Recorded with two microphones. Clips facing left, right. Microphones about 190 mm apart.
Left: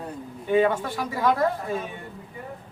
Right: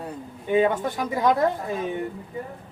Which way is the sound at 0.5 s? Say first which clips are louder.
Even; 20° right (ahead or behind).